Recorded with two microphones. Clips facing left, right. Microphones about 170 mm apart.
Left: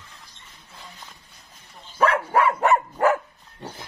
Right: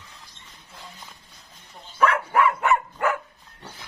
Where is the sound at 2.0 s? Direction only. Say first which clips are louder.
Left 1 dB; 35° left (ahead or behind).